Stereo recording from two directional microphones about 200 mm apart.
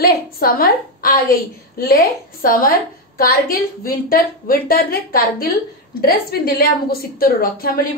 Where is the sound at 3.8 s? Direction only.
45° left (ahead or behind).